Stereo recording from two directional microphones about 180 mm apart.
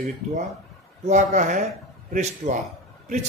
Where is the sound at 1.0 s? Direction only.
45° right (ahead or behind).